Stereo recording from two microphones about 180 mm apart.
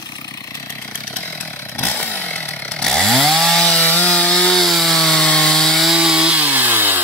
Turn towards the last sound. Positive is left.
turn(degrees=-10)  # may be behind; listen again after turning